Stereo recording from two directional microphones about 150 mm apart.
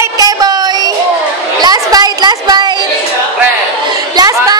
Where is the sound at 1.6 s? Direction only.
25° right (ahead or behind).